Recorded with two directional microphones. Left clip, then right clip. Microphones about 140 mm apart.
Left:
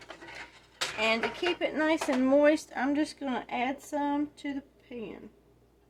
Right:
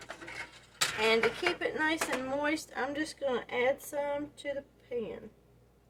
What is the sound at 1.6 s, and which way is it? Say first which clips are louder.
Speech: left 3 dB; 60° left (ahead or behind).